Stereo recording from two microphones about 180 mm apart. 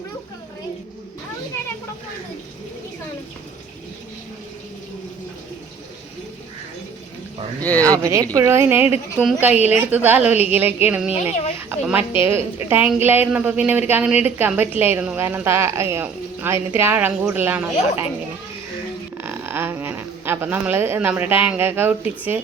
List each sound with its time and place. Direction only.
7.8 s a woman's voice: 15° right (ahead or behind)
11.1 s speech: 35° left (ahead or behind)
11.5 s a woman's voice: 10° right (ahead or behind)
19.1 s speech: 10° right (ahead or behind)